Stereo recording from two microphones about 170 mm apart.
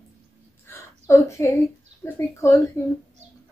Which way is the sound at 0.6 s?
15° left (ahead or behind).